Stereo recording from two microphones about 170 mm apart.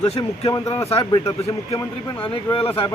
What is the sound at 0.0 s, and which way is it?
Speech, 35° left (ahead or behind).